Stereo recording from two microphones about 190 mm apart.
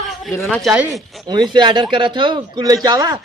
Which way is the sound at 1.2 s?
25° right (ahead or behind).